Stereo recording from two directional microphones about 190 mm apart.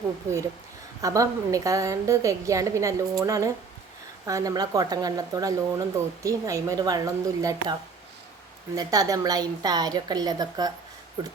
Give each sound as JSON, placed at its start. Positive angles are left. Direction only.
{"t": 1.0, "sound": "a woman's voice", "side_deg": -15}